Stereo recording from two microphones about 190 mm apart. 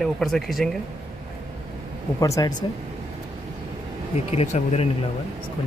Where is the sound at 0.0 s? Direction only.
Centre (ahead or behind).